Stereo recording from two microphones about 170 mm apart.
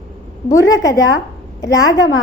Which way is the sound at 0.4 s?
15° left (ahead or behind).